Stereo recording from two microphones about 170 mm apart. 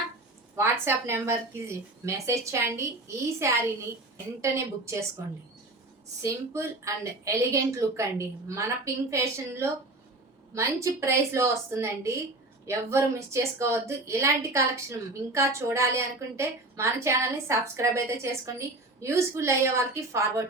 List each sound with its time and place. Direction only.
0.5 s a woman's voice: 15° right (ahead or behind)
6.2 s a woman's voice: 15° right (ahead or behind)